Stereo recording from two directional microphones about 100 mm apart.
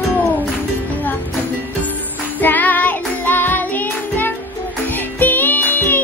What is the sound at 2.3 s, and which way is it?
Music, 15° left (ahead or behind).